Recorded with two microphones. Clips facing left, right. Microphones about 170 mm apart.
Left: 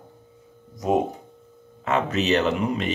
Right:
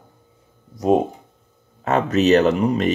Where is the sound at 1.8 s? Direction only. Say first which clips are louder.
Right 5 dB; 40° right (ahead or behind).